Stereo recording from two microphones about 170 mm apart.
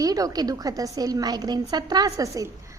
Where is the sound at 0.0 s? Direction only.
20° right (ahead or behind).